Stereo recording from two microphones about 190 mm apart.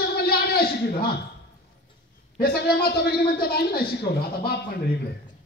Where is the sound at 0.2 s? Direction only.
55° left (ahead or behind).